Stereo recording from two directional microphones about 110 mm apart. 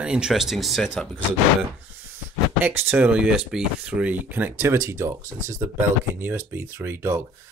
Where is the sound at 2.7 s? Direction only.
15° right (ahead or behind).